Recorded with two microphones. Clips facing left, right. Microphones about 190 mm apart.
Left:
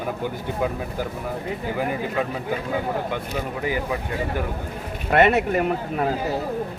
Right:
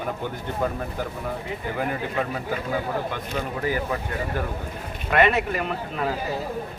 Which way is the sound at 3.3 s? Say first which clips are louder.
Right 2 dB; 15° left (ahead or behind).